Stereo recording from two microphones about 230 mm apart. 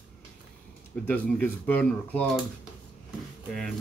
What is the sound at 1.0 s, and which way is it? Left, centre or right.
Speech, centre.